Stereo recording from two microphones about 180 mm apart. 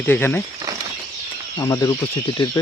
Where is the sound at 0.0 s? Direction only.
10° left (ahead or behind).